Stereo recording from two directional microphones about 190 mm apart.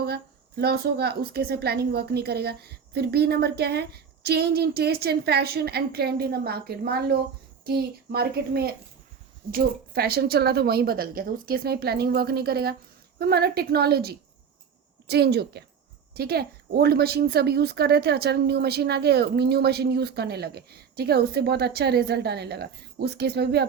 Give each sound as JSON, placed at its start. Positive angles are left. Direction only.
{"t": 0.0, "sound": "speech", "side_deg": -55}